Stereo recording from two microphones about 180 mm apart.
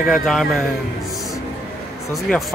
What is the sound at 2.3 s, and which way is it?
Speech, 5° left (ahead or behind).